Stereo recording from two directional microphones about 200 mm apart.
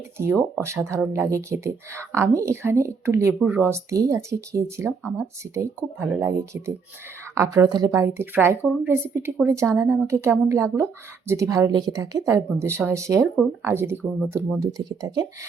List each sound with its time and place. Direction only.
0.2 s speech: 10° right (ahead or behind)